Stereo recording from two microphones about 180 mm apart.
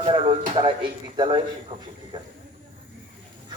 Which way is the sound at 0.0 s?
30° right (ahead or behind).